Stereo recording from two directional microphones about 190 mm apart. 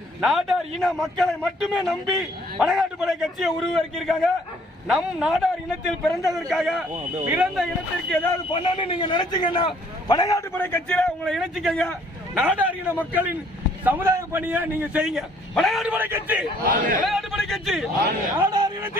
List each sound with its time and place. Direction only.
0.2 s a man's voice: centre (ahead or behind)
8.5 s a man's voice: 25° left (ahead or behind)
10.6 s a man's voice: 10° left (ahead or behind); by 16.4 s 10° right (ahead or behind)
16.6 s a man's voice: 45° right (ahead or behind)
17.1 s speech: centre (ahead or behind)
18.4 s speech: 20° right (ahead or behind)